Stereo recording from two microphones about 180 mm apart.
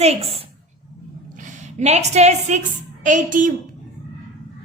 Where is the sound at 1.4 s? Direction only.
40° right (ahead or behind).